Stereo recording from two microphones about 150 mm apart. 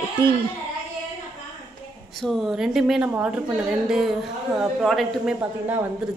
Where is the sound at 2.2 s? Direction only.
Centre (ahead or behind).